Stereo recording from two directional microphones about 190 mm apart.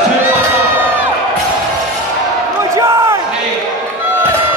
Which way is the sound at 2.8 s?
15° right (ahead or behind).